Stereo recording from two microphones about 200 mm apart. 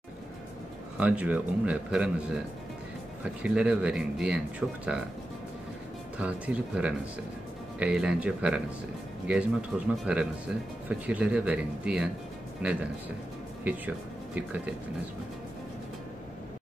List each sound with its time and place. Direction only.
0.9 s a man's voice: 5° right (ahead or behind)
3.4 s speech: 5° right (ahead or behind)
6.1 s a man's voice: 5° right (ahead or behind)